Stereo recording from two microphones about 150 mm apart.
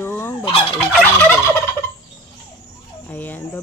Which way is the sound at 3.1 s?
10° left (ahead or behind).